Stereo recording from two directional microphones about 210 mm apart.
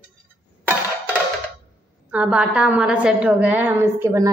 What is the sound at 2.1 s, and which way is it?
A woman's voice, 5° right (ahead or behind).